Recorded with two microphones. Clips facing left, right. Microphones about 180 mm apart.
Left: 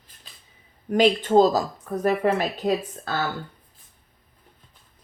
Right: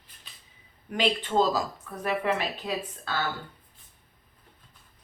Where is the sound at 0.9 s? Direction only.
40° left (ahead or behind).